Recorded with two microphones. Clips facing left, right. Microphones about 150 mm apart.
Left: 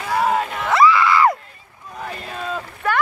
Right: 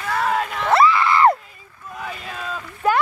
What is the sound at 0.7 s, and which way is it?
Screaming, 30° right (ahead or behind).